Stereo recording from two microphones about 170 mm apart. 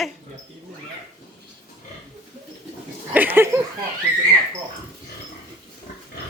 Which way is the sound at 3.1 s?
10° right (ahead or behind).